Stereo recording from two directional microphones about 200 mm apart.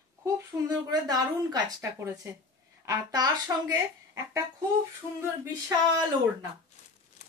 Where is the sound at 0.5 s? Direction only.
15° right (ahead or behind).